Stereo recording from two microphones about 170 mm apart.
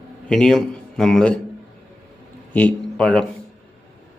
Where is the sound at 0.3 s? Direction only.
5° left (ahead or behind).